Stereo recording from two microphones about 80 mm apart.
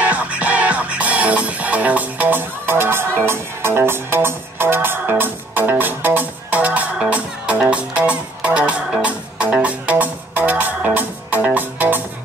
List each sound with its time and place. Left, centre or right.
0.0 s music: centre